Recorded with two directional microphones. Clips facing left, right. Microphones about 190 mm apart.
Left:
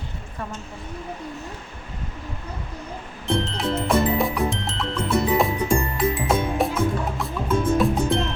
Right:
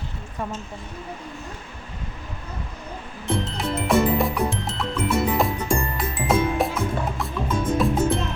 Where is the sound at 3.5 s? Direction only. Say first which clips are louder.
Right 2 dB; centre (ahead or behind).